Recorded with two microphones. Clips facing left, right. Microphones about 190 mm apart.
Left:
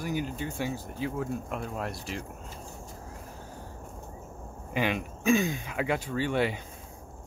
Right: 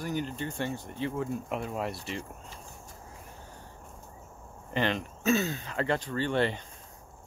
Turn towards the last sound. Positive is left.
turn(degrees=10)  # may be behind; listen again after turning